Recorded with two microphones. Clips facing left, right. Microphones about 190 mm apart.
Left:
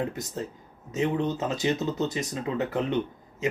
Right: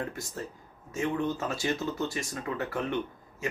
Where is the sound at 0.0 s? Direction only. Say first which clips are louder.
Left 5 dB; 20° left (ahead or behind).